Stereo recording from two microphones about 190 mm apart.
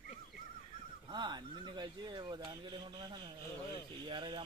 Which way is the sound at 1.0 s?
25° right (ahead or behind).